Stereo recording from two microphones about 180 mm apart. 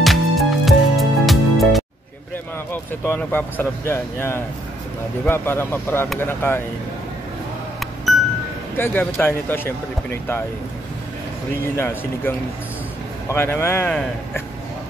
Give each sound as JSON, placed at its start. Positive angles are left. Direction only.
{"t": 0.0, "sound": "music", "side_deg": 0}
{"t": 2.7, "sound": "speech", "side_deg": 10}
{"t": 8.7, "sound": "speech", "side_deg": 10}
{"t": 11.5, "sound": "speech", "side_deg": 10}